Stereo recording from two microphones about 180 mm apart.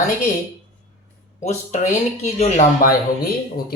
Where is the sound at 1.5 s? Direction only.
40° left (ahead or behind).